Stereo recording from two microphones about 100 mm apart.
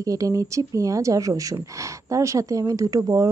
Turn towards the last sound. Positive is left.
turn(degrees=-35)  # may be behind; listen again after turning